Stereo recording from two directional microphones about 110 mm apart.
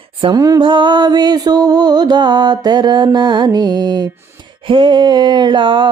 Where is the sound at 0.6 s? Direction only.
45° right (ahead or behind).